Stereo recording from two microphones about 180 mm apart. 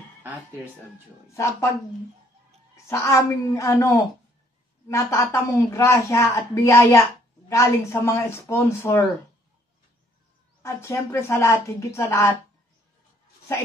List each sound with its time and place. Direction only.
1.3 s a woman's voice: 15° left (ahead or behind)
2.7 s a woman's voice: 15° left (ahead or behind)
10.6 s a woman's voice: 15° left (ahead or behind)